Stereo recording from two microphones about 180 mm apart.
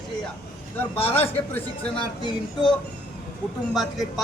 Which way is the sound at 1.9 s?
25° left (ahead or behind).